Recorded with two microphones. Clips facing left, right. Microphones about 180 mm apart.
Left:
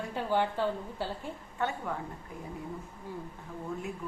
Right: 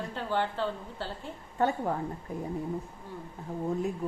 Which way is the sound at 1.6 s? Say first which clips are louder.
Right 6 dB; 40° right (ahead or behind).